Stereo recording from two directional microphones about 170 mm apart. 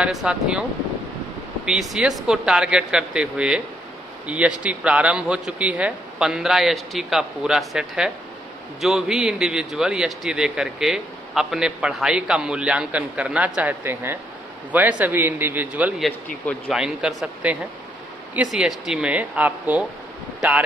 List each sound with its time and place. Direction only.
0.0 s a man's voice: 5° right (ahead or behind)
1.7 s a man's voice: centre (ahead or behind)